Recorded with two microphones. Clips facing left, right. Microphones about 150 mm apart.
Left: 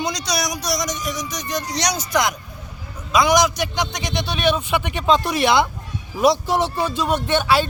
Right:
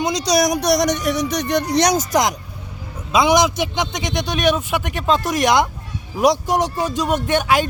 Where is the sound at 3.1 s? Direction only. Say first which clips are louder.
Right 1 dB; 25° right (ahead or behind).